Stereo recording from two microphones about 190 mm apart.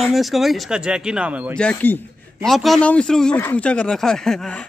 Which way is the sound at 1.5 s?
10° left (ahead or behind).